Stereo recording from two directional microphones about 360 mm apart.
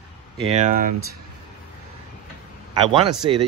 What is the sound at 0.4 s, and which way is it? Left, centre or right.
Speech, centre.